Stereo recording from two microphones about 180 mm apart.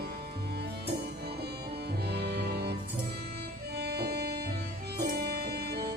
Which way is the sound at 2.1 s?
65° right (ahead or behind).